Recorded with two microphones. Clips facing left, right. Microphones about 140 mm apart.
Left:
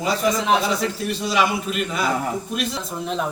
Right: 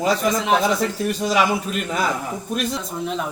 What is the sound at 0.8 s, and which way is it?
A man's voice, 45° right (ahead or behind).